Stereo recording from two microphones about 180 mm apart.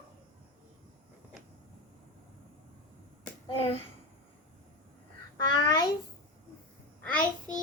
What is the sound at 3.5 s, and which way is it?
Speech, 30° left (ahead or behind).